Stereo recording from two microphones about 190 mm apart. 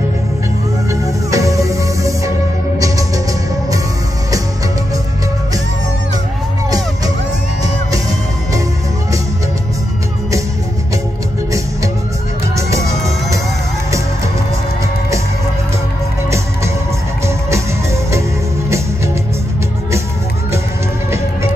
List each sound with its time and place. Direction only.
1.3 s music: 15° right (ahead or behind)
12.5 s music: 15° right (ahead or behind)